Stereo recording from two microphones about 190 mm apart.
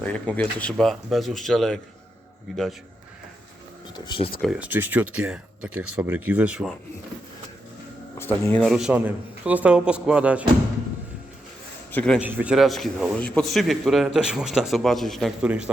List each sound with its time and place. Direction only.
0.0 s a man's voice: 5° left (ahead or behind)
3.9 s speech: 25° left (ahead or behind)
4.4 s speech: 5° right (ahead or behind)
8.2 s speech: 10° left (ahead or behind)
8.7 s a man's voice: 5° right (ahead or behind)
11.9 s a man's voice: 5° left (ahead or behind)
12.2 s a man's voice: 10° right (ahead or behind)